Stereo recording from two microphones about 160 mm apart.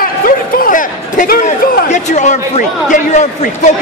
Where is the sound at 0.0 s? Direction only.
60° left (ahead or behind).